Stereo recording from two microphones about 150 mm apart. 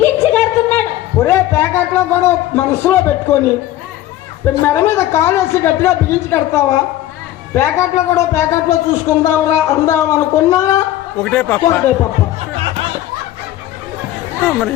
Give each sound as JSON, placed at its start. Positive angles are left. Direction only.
{"t": 0.0, "sound": "a sound", "side_deg": 15}
{"t": 4.4, "sound": "a man's voice", "side_deg": 15}
{"t": 8.1, "sound": "speech", "side_deg": 20}
{"t": 11.2, "sound": "a man's voice", "side_deg": 5}
{"t": 12.5, "sound": "music", "side_deg": -35}